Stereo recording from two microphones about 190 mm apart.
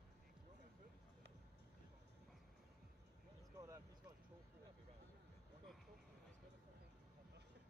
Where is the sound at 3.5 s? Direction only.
15° right (ahead or behind).